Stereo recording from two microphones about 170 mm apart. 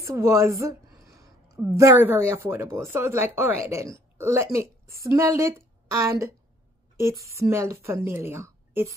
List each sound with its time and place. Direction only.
0.0 s a woman's voice: 20° right (ahead or behind)
7.3 s a woman's voice: 15° right (ahead or behind)